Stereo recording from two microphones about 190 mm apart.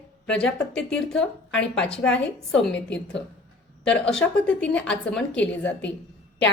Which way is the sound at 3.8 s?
5° left (ahead or behind).